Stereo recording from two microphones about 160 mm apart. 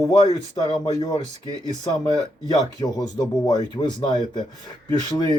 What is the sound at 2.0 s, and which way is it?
Speech, 25° left (ahead or behind).